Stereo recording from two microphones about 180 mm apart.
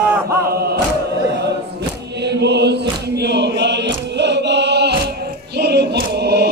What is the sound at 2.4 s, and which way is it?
Choir, 70° right (ahead or behind).